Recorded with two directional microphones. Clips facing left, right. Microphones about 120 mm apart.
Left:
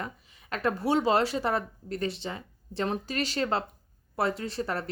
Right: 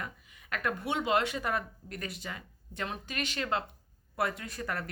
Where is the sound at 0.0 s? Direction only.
30° left (ahead or behind).